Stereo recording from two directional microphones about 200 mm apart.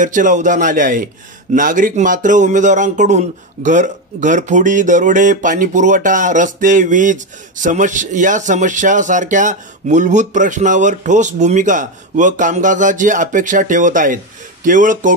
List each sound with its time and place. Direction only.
0.0 s a man's voice: 40° right (ahead or behind)